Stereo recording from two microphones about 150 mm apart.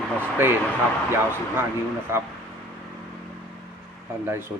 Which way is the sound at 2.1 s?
20° right (ahead or behind).